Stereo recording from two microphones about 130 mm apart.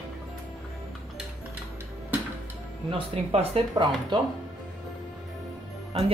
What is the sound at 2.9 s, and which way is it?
Speech, 50° right (ahead or behind).